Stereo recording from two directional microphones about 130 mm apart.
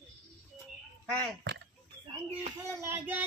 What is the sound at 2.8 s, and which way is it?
Speech, 15° right (ahead or behind).